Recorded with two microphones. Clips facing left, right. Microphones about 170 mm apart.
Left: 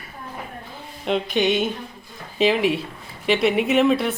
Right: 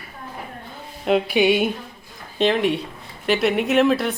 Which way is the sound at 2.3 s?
5° left (ahead or behind).